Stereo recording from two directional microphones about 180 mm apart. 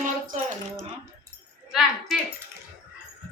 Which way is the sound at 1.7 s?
Centre (ahead or behind).